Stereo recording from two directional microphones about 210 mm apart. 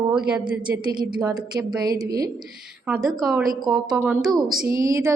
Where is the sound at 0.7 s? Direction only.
20° right (ahead or behind).